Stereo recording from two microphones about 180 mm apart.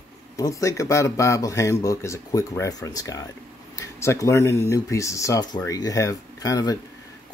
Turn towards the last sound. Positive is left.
turn(degrees=20)  # may be behind; listen again after turning